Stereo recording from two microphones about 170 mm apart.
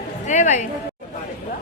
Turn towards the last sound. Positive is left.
turn(degrees=45)  # may be behind; listen again after turning